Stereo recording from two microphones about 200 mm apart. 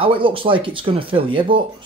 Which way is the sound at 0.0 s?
25° right (ahead or behind).